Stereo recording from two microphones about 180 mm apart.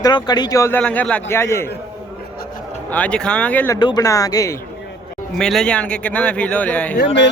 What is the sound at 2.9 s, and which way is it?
Speech, 5° left (ahead or behind).